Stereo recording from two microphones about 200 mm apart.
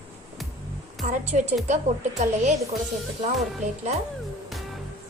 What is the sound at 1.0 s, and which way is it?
Speech, 35° right (ahead or behind).